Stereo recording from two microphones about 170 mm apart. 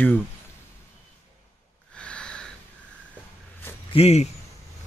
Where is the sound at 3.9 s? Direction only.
35° left (ahead or behind).